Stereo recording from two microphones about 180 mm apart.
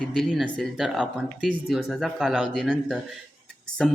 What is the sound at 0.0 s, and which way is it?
Speech, 5° left (ahead or behind).